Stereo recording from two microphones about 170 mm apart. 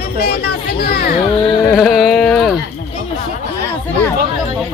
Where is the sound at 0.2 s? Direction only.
65° left (ahead or behind).